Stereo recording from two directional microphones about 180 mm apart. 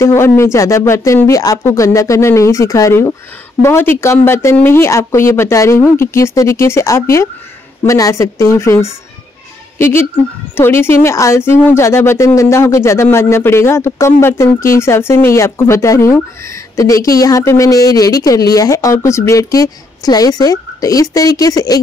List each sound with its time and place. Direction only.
0.0 s speech: 15° left (ahead or behind)